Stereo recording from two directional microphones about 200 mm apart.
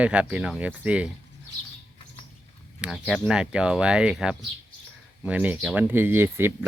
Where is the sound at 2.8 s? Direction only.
Centre (ahead or behind).